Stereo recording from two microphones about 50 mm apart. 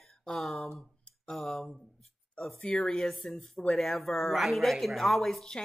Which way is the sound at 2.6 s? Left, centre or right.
Centre.